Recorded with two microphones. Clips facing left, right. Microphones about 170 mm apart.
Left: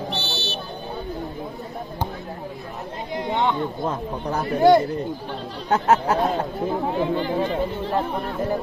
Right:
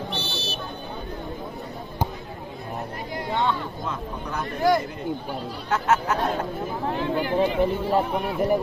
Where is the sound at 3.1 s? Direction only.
20° left (ahead or behind).